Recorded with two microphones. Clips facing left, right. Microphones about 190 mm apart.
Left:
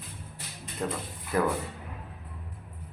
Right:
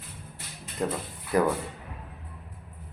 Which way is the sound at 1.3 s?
15° right (ahead or behind).